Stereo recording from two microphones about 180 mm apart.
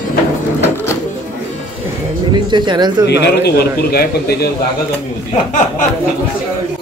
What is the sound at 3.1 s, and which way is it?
A man's voice, 65° left (ahead or behind).